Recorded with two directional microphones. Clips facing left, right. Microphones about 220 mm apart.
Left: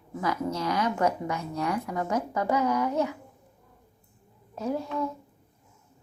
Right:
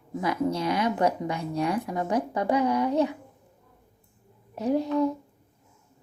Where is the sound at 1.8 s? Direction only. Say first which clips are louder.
Right 2 dB; 20° right (ahead or behind).